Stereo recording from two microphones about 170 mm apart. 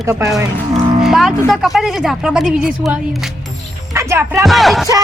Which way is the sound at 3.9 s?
15° right (ahead or behind).